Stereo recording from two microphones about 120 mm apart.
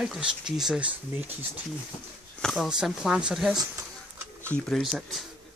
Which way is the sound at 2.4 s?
Centre (ahead or behind).